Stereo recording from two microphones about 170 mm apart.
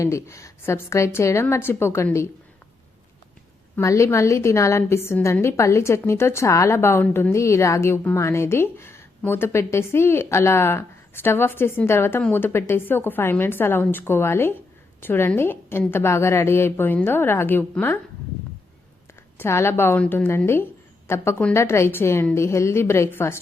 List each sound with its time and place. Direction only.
0.0 s a woman's voice: 15° left (ahead or behind)
3.8 s a woman's voice: 15° left (ahead or behind)
19.4 s a woman's voice: 15° left (ahead or behind)